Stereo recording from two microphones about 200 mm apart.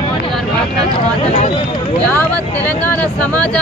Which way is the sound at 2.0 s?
5° left (ahead or behind).